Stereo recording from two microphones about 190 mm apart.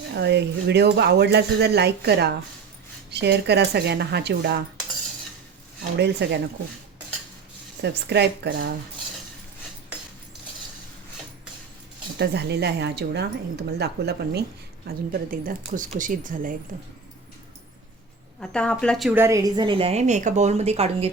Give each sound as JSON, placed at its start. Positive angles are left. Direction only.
{"t": 0.1, "sound": "speech", "side_deg": -65}
{"t": 6.0, "sound": "speech", "side_deg": -60}
{"t": 7.8, "sound": "speech", "side_deg": -60}
{"t": 12.2, "sound": "speech", "side_deg": -60}
{"t": 14.8, "sound": "speech", "side_deg": -50}
{"t": 18.3, "sound": "speech", "side_deg": 5}
{"t": 19.1, "sound": "a woman's voice", "side_deg": -15}